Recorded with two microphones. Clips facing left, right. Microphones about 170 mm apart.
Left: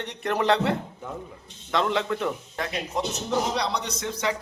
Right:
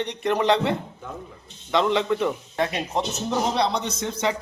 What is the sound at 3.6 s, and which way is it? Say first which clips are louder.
Speech: right 4 dB; 25° right (ahead or behind).